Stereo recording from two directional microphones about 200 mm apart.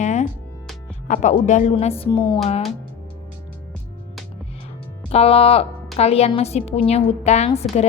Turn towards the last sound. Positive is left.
turn(degrees=30)  # may be behind; listen again after turning